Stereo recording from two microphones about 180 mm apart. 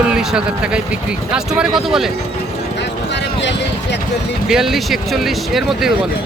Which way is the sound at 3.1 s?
75° left (ahead or behind).